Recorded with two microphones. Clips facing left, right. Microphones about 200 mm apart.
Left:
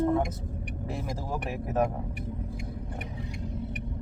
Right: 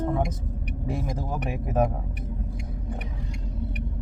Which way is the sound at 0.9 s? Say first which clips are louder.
Right 4 dB; centre (ahead or behind).